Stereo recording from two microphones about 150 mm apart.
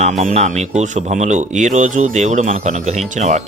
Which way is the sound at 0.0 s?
50° right (ahead or behind).